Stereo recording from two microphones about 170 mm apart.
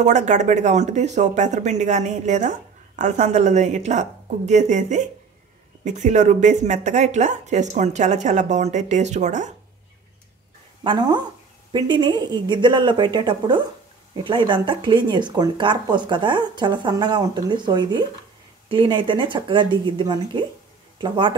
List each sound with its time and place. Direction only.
0.0 s speech: 45° right (ahead or behind)
10.8 s speech: 25° right (ahead or behind)